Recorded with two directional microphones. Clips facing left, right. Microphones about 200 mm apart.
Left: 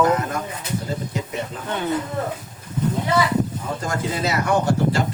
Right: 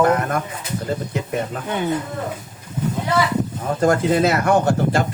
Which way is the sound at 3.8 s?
55° right (ahead or behind).